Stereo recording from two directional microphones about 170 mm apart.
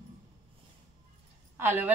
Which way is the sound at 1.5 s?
15° right (ahead or behind).